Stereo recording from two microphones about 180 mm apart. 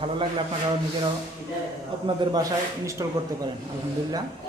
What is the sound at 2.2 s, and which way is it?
Speech, 25° right (ahead or behind).